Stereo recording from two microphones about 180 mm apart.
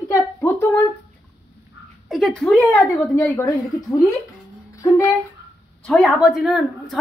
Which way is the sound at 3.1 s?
15° left (ahead or behind).